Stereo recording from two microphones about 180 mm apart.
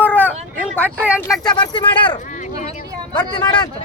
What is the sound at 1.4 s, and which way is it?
Speech, 25° left (ahead or behind).